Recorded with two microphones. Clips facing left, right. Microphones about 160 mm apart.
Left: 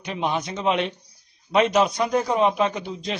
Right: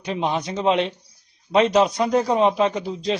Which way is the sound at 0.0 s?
30° right (ahead or behind).